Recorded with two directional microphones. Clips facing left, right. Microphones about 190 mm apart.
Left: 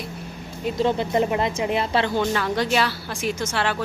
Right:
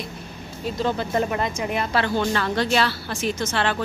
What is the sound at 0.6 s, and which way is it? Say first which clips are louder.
Speech: left 3 dB; 20° left (ahead or behind).